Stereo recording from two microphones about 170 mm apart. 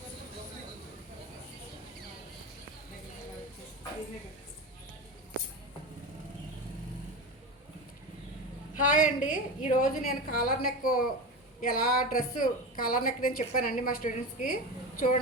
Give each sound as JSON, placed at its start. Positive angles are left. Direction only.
{"t": 8.8, "sound": "a woman's voice", "side_deg": 50}